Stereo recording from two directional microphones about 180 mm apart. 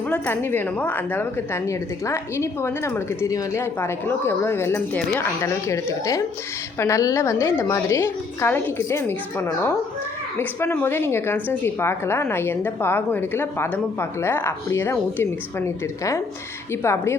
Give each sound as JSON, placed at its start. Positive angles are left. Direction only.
{"t": 0.1, "sound": "speech", "side_deg": 10}